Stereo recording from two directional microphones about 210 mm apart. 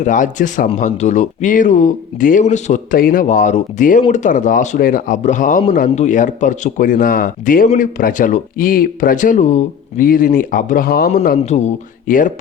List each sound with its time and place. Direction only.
0.0 s speech: 35° left (ahead or behind)
11.1 s speech: 35° left (ahead or behind)